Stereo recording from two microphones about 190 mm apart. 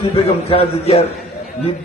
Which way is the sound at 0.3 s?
30° left (ahead or behind).